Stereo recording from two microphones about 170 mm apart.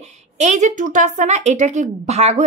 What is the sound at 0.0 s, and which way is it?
Speech, 40° right (ahead or behind).